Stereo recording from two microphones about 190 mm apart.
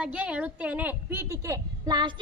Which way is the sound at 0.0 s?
5° right (ahead or behind).